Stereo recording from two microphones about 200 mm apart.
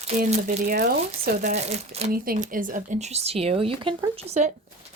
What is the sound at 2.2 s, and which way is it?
Speech, 45° right (ahead or behind).